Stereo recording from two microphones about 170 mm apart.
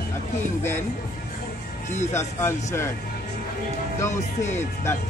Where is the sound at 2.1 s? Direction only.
15° left (ahead or behind).